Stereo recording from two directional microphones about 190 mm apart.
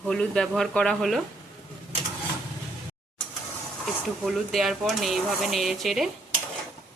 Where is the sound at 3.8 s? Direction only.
Centre (ahead or behind).